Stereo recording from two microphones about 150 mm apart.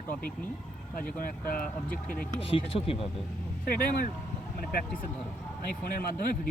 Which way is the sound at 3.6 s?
70° left (ahead or behind).